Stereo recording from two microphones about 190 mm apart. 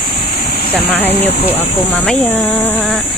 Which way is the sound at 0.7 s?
10° left (ahead or behind).